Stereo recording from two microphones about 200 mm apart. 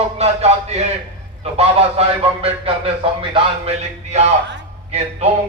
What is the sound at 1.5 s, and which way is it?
A man's voice, 30° right (ahead or behind).